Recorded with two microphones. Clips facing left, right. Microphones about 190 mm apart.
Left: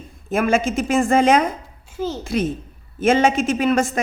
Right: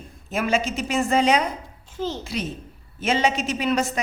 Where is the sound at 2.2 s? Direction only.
50° left (ahead or behind).